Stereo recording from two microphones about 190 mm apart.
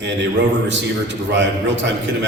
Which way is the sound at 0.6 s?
70° right (ahead or behind).